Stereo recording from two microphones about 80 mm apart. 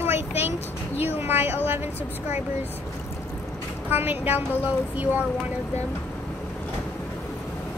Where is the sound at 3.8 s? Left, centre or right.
Right.